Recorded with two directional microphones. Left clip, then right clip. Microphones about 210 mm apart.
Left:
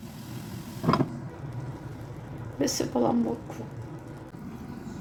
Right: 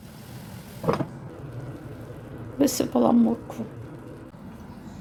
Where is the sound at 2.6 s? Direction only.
35° right (ahead or behind).